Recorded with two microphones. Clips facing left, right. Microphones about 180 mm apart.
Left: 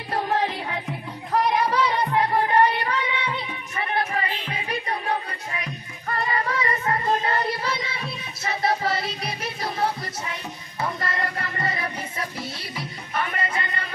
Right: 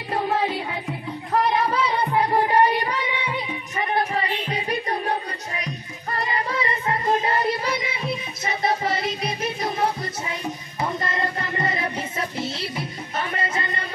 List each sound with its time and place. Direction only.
0.1 s music: 5° right (ahead or behind)
4.1 s a sound: 30° right (ahead or behind)
5.6 s child singing: 35° right (ahead or behind); by 10.3 s 20° right (ahead or behind)
10.8 s music: 20° right (ahead or behind)